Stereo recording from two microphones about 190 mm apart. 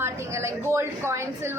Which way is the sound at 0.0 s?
15° right (ahead or behind).